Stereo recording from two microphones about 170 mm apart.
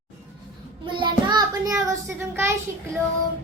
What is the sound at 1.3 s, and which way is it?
A child's voice, 20° right (ahead or behind).